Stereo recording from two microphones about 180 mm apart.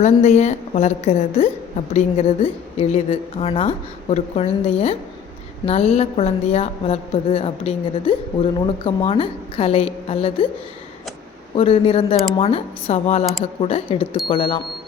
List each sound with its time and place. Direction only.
0.0 s a woman's voice: 40° left (ahead or behind)
11.5 s a woman's voice: 35° left (ahead or behind)